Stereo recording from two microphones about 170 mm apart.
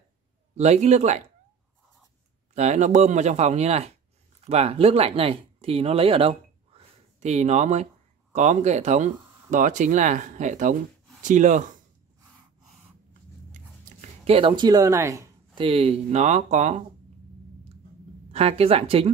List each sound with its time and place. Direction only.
0.6 s speech: 40° right (ahead or behind)
2.5 s speech: 45° right (ahead or behind)
14.2 s speech: 35° right (ahead or behind)
15.5 s speech: 35° right (ahead or behind)
18.3 s speech: 35° right (ahead or behind)